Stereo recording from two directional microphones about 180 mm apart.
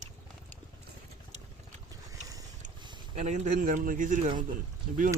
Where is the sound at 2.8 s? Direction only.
25° right (ahead or behind).